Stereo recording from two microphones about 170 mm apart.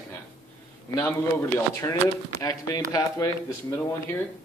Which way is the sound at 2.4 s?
20° left (ahead or behind).